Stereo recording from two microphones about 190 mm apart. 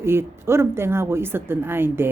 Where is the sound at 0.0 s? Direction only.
10° right (ahead or behind).